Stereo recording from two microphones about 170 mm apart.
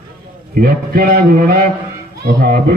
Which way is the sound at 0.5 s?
60° right (ahead or behind).